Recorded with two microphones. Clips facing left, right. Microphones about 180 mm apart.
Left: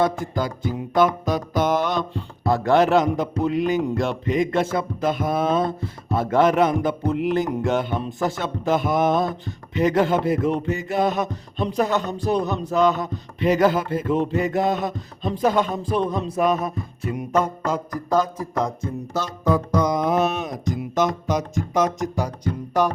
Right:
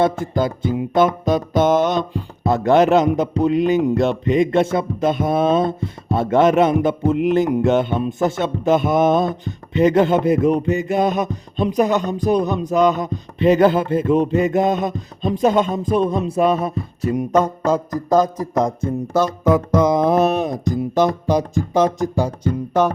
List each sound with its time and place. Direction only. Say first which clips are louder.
0.0 s speech: right 4 dB; 25° right (ahead or behind)
16.3 s music: right 4 dB; 25° right (ahead or behind); by 19.2 s 50° right (ahead or behind)
19.5 s speech: right 3 dB; 25° right (ahead or behind)